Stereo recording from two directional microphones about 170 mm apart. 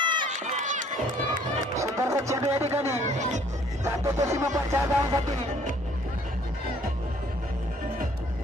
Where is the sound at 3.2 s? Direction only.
45° right (ahead or behind).